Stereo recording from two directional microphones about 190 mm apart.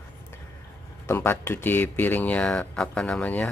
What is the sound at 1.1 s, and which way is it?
Speech, 15° left (ahead or behind).